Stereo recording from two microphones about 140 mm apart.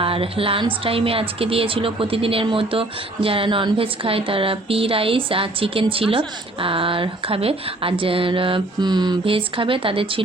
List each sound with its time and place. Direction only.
0.0 s speech: 40° right (ahead or behind)